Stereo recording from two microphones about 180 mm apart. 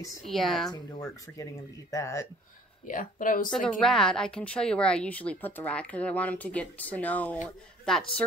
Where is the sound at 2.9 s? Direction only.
45° left (ahead or behind).